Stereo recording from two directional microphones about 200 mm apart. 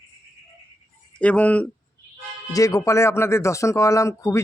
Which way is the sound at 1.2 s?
5° left (ahead or behind).